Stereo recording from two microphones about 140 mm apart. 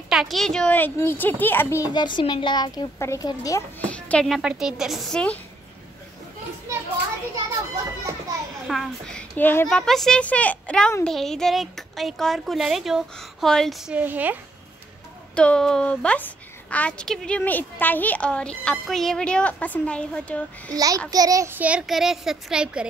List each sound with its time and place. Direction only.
0.1 s a child's voice: centre (ahead or behind); by 1.8 s 15° left (ahead or behind)
2.0 s speech: 35° left (ahead or behind)
3.8 s a sound: 10° left (ahead or behind)
4.4 s speech: 5° right (ahead or behind)
8.6 s a child's voice: centre (ahead or behind)
9.7 s a child's voice: 5° left (ahead or behind)
15.3 s a woman's voice: 5° left (ahead or behind)
20.7 s a child's voice: 25° right (ahead or behind)
21.5 s speech: 10° right (ahead or behind)